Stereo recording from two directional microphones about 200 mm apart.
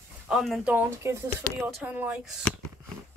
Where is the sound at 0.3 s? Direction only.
Centre (ahead or behind).